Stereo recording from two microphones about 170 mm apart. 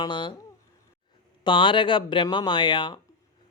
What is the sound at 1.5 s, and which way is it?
A man's voice, 30° left (ahead or behind).